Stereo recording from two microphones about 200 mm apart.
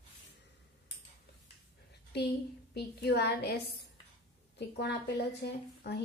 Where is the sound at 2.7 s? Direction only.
55° left (ahead or behind).